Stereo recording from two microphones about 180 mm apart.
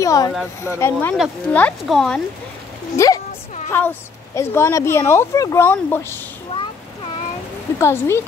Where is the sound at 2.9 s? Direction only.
15° left (ahead or behind).